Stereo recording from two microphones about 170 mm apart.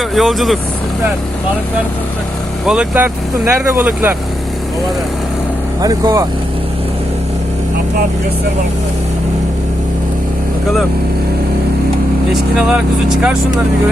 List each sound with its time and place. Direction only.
0.1 s speech: centre (ahead or behind)
2.6 s speech: 10° right (ahead or behind)
5.8 s speech: 20° right (ahead or behind)
12.3 s speech: 5° right (ahead or behind)